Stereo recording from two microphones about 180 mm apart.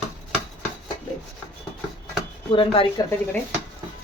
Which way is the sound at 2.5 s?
30° left (ahead or behind).